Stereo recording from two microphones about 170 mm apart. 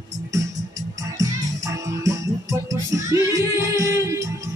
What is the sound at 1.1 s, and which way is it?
Music, 20° right (ahead or behind).